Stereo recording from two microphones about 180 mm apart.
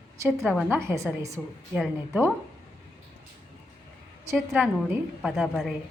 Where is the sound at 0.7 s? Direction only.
15° right (ahead or behind).